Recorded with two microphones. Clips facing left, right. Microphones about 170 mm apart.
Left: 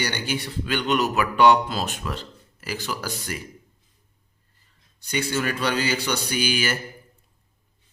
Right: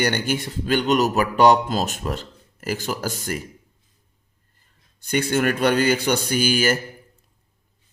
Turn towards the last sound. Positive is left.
turn(degrees=-45)  # may be behind; listen again after turning